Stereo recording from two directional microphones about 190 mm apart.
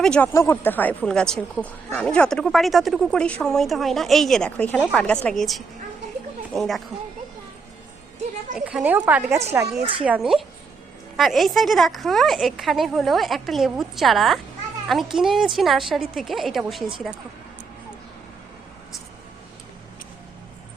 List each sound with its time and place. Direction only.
0.0 s speech: 5° left (ahead or behind)
8.5 s speech: 5° right (ahead or behind)
9.7 s a woman's voice: 30° right (ahead or behind)
10.0 s speech: 5° right (ahead or behind)